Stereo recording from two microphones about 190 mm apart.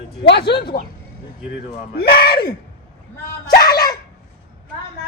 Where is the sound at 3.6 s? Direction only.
20° left (ahead or behind).